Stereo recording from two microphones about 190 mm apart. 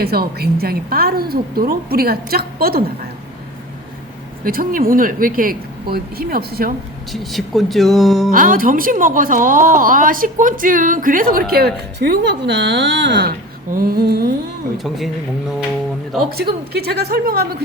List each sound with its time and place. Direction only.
0.0 s speech: 55° right (ahead or behind)
4.4 s speech: 50° right (ahead or behind)
7.1 s speech: centre (ahead or behind)
8.3 s speech: 45° right (ahead or behind)
14.8 s speech: centre (ahead or behind)
16.7 s a woman's voice: 55° right (ahead or behind)